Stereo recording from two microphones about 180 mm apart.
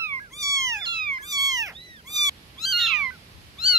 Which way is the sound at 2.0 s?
20° right (ahead or behind).